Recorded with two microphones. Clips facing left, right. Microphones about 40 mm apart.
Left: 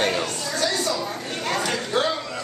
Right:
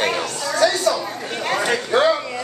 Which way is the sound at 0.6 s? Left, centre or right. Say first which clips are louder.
Right 7 dB; right.